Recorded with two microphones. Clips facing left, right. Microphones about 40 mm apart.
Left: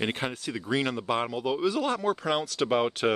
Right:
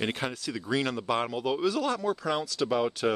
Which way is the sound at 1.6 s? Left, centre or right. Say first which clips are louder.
Left 1 dB; left.